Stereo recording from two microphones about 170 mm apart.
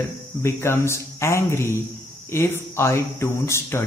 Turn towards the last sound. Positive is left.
turn(degrees=15)  # may be behind; listen again after turning